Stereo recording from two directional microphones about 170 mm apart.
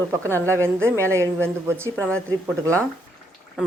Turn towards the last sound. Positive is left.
turn(degrees=-5)  # may be behind; listen again after turning